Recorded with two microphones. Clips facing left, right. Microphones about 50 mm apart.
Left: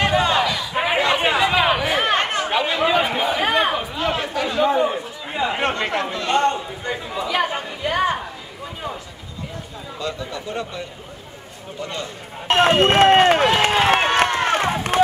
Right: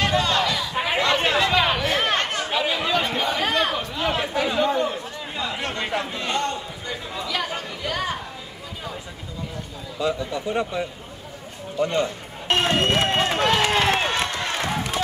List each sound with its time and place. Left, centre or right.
0.0 s a sound: centre
2.2 s chatter: left
2.5 s chatter: centre
2.8 s chatter: centre
9.9 s speech: centre
11.8 s a man's voice: right
12.4 s a sound: left
12.8 s speech: left
13.8 s crowd: left